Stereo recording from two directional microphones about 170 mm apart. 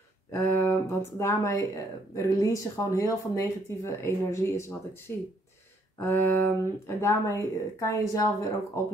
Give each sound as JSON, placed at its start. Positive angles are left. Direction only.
{"t": 0.3, "sound": "speech", "side_deg": 15}